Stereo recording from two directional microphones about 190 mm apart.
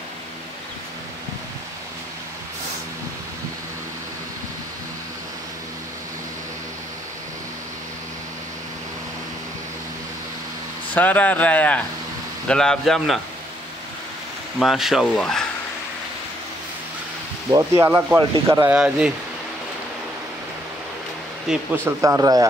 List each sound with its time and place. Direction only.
11.0 s speech: 10° left (ahead or behind)
14.6 s speech: centre (ahead or behind)
17.5 s speech: 15° right (ahead or behind)
21.5 s speech: 15° right (ahead or behind)